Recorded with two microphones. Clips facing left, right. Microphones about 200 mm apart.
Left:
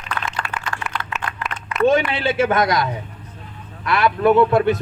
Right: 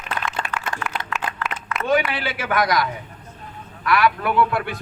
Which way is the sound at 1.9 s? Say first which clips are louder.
Left 1 dB; 25° left (ahead or behind).